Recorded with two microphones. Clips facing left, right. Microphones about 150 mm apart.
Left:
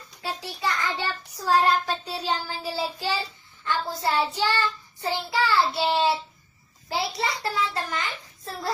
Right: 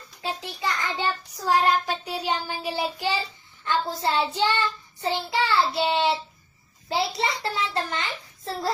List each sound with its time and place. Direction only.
0.2 s a child's voice: 20° right (ahead or behind)